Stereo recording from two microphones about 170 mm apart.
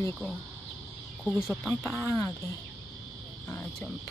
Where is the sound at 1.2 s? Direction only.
5° left (ahead or behind).